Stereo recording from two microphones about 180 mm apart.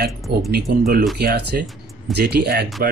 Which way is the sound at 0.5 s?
60° right (ahead or behind).